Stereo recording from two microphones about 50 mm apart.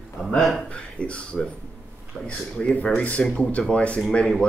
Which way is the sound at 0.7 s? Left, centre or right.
Left.